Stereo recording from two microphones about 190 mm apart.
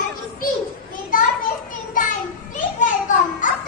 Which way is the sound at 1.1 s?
45° left (ahead or behind).